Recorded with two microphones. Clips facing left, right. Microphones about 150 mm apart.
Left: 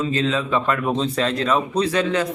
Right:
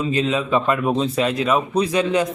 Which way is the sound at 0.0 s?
15° right (ahead or behind).